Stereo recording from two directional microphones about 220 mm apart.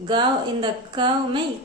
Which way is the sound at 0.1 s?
20° right (ahead or behind).